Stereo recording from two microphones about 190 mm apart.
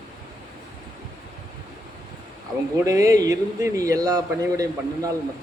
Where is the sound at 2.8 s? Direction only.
15° right (ahead or behind).